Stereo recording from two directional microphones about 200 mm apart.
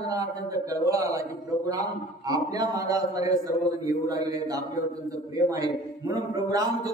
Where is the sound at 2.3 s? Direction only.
15° right (ahead or behind).